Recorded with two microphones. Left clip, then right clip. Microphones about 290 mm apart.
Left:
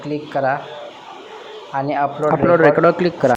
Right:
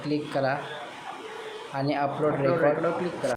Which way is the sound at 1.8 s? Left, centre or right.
Centre.